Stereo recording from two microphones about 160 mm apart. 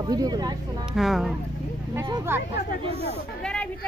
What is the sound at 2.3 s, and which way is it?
Speech, 15° right (ahead or behind).